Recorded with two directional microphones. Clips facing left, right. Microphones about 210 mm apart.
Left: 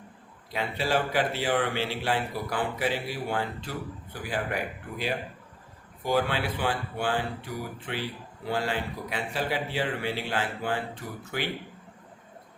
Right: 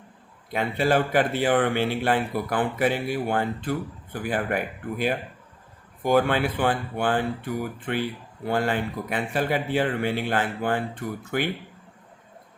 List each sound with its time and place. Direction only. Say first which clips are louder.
0.5 s speech: right 5 dB; 50° right (ahead or behind)